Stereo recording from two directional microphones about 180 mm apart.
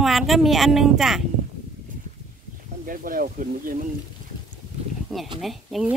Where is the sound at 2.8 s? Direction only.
50° right (ahead or behind).